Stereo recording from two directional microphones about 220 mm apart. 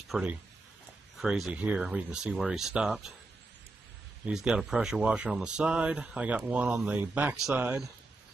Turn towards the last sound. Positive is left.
turn(degrees=-5)  # may be behind; listen again after turning